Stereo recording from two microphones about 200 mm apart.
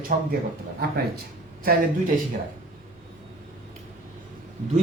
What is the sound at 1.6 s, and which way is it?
Speech, 45° right (ahead or behind).